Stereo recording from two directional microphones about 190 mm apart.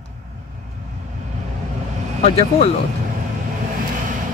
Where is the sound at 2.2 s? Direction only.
35° left (ahead or behind).